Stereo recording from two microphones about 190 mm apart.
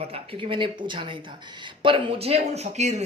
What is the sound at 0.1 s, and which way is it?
Speech, 30° right (ahead or behind).